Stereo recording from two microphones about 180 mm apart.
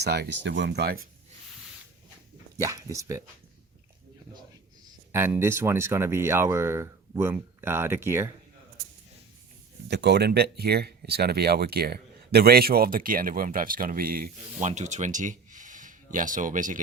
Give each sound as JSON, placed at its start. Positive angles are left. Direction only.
{"t": 0.0, "sound": "speech", "side_deg": -65}
{"t": 2.6, "sound": "speech", "side_deg": -20}
{"t": 5.1, "sound": "speech", "side_deg": -15}
{"t": 9.9, "sound": "speech", "side_deg": -70}
{"t": 14.7, "sound": "speech", "side_deg": -40}